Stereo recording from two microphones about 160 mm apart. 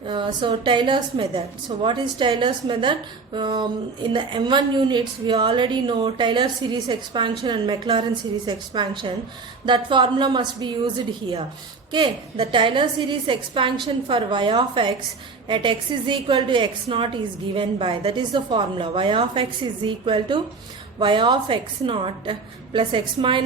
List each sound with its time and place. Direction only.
0.0 s a woman's voice: 30° right (ahead or behind)
11.9 s a woman's voice: 30° right (ahead or behind)